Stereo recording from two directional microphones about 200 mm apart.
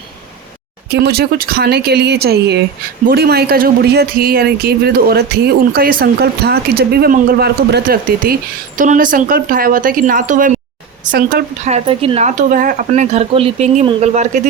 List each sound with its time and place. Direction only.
0.9 s speech: 55° right (ahead or behind); by 14.4 s 35° right (ahead or behind)